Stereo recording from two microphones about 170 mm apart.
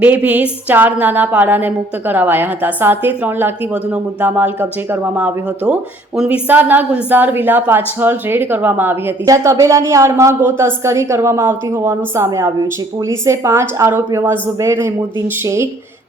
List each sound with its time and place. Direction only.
0.0 s speech: 10° right (ahead or behind)